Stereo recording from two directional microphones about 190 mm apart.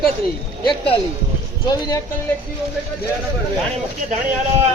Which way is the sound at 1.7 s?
20° left (ahead or behind).